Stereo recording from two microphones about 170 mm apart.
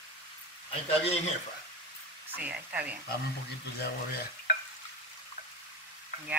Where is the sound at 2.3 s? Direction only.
10° right (ahead or behind).